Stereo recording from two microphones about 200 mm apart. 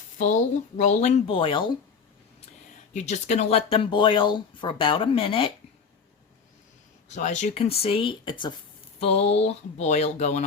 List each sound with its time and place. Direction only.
0.2 s speech: 40° left (ahead or behind)
2.9 s speech: 35° left (ahead or behind)
7.1 s speech: 35° left (ahead or behind)